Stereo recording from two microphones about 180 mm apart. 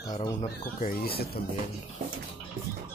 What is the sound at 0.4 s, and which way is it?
Speech, 50° left (ahead or behind).